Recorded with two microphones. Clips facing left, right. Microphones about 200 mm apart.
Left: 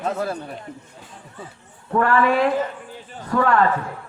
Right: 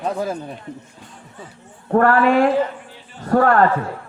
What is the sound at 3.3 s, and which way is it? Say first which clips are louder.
Speech: right 4 dB; 45° right (ahead or behind).